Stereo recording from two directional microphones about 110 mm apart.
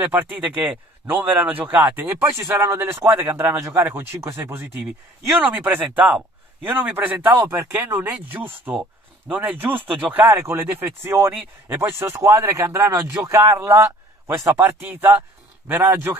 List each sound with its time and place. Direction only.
0.0 s speech: 15° right (ahead or behind)
3.5 s speech: 30° right (ahead or behind); by 9.8 s 15° right (ahead or behind)
10.2 s speech: 25° right (ahead or behind)